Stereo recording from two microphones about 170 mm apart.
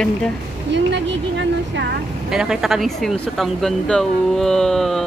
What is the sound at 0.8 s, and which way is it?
A woman's voice, 90° right.